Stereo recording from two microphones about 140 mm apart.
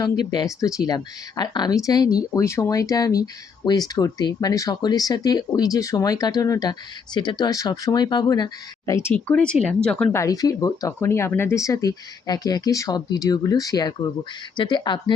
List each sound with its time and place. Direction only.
0.0 s speech: 30° left (ahead or behind)
8.9 s speech: 15° left (ahead or behind)
10.2 s speech: 25° left (ahead or behind)